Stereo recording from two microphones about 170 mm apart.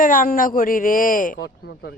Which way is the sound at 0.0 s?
55° left (ahead or behind).